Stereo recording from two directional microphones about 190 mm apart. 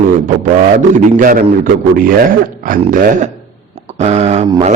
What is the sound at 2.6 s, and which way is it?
A man's voice, 45° right (ahead or behind).